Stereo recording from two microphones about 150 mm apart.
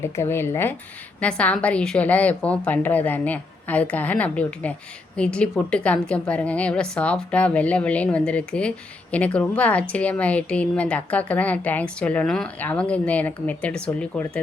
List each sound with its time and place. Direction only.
0.0 s speech: 15° left (ahead or behind)